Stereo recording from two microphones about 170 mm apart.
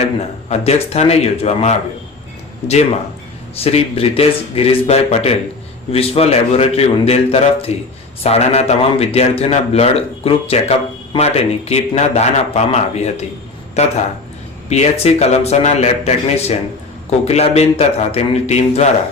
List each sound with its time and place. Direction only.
0.0 s a man's voice: 40° left (ahead or behind)